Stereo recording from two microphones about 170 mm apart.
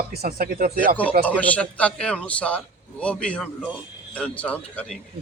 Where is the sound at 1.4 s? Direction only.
10° left (ahead or behind).